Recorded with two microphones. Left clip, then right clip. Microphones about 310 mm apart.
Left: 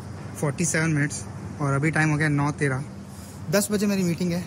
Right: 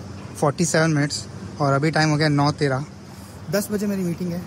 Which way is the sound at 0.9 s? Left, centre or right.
Right.